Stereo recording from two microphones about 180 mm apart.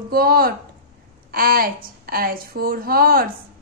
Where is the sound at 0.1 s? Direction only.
55° right (ahead or behind).